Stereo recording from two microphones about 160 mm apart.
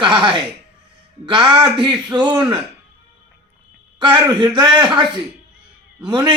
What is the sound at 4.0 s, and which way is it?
Speech, 30° right (ahead or behind).